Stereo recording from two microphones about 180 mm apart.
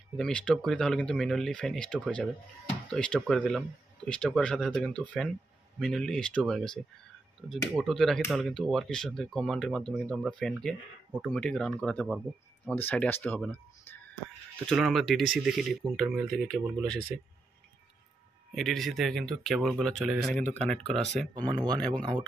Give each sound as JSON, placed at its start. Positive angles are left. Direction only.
{"t": 0.2, "sound": "speech", "side_deg": 5}
{"t": 18.5, "sound": "speech", "side_deg": 0}
{"t": 21.4, "sound": "speech", "side_deg": -25}